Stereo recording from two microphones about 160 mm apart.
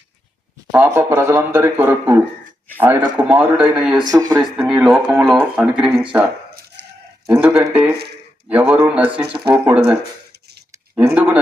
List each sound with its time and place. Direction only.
0.7 s speech: 15° right (ahead or behind)
4.1 s speech: 25° right (ahead or behind)
4.4 s speech: 5° right (ahead or behind)
7.3 s speech: 15° right (ahead or behind)
10.9 s speech: 10° right (ahead or behind)